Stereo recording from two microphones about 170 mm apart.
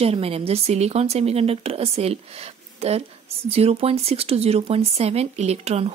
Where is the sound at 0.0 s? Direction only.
35° right (ahead or behind).